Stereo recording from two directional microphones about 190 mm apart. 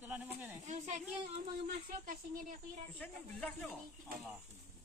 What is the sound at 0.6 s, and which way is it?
Speech, 40° right (ahead or behind).